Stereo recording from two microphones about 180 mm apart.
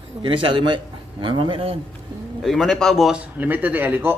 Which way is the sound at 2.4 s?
Centre (ahead or behind).